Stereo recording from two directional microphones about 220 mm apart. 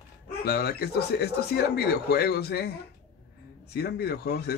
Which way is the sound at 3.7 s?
45° left (ahead or behind).